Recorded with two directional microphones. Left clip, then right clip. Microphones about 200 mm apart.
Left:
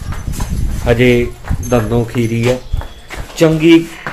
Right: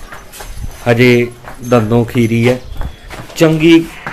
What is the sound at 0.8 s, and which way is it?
A man's voice, 30° right (ahead or behind).